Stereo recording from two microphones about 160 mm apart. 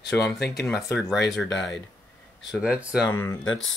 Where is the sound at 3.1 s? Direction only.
15° left (ahead or behind).